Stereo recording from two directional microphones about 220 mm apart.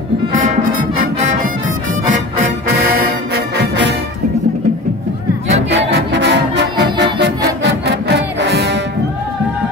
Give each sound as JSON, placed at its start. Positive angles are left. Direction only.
{"t": 3.5, "sound": "music", "side_deg": -50}
{"t": 5.5, "sound": "music", "side_deg": -55}